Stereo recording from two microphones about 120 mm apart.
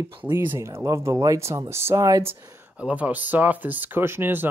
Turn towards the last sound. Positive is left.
turn(degrees=-20)  # may be behind; listen again after turning